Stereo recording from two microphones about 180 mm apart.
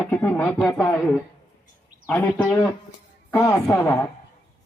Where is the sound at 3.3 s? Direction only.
15° left (ahead or behind).